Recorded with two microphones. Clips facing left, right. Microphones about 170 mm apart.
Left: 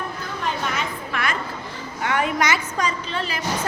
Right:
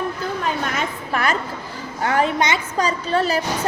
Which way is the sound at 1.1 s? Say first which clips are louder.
Right 6 dB; 35° right (ahead or behind).